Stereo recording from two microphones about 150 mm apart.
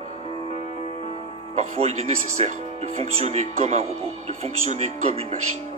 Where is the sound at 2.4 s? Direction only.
45° right (ahead or behind).